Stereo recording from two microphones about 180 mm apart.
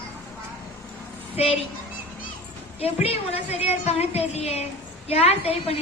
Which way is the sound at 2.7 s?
35° left (ahead or behind).